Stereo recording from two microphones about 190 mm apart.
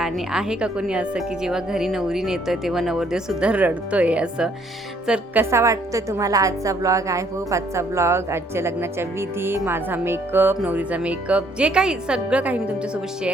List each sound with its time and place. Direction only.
0.0 s a woman's voice: 5° right (ahead or behind)